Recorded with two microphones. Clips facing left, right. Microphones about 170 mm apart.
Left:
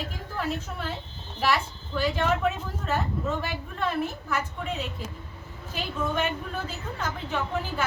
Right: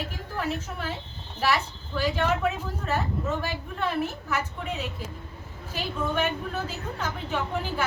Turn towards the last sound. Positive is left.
turn(degrees=-10)  # may be behind; listen again after turning